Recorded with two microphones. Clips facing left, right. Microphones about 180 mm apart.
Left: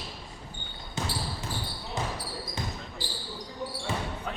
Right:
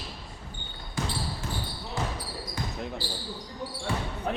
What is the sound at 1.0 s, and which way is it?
Basketball bounce, 25° left (ahead or behind).